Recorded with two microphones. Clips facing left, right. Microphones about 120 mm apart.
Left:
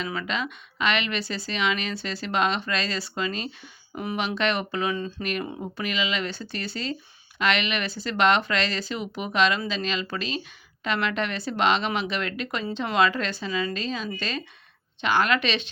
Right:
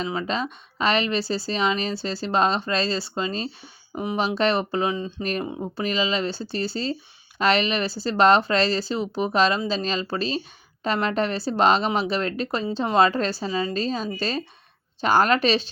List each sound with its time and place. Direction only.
0.0 s speech: 30° right (ahead or behind)
4.4 s speech: 35° right (ahead or behind)
4.9 s speech: 20° right (ahead or behind)
5.2 s speech: 35° right (ahead or behind)